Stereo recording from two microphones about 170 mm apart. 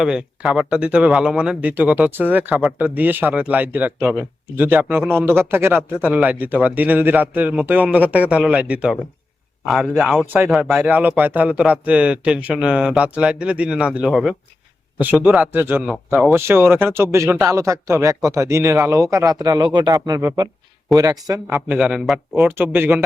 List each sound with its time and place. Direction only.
0.0 s a man's voice: 5° right (ahead or behind); by 21.4 s 20° right (ahead or behind)
21.4 s a man's voice: 10° right (ahead or behind)